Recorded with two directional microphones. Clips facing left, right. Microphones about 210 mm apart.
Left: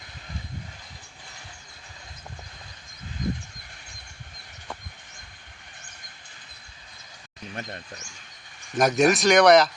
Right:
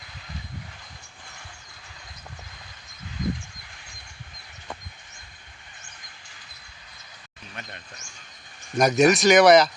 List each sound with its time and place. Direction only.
7.5 s speech: 35° left (ahead or behind)
8.7 s speech: centre (ahead or behind)